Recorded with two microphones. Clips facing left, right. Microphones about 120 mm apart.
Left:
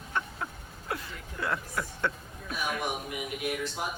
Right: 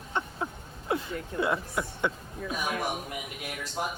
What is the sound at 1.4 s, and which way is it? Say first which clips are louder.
Speech: right 3 dB; 20° right (ahead or behind).